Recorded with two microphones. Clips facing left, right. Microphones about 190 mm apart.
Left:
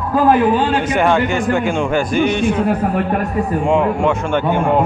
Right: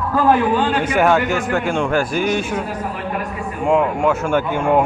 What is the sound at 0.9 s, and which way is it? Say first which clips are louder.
A man's voice: even; 5° right (ahead or behind).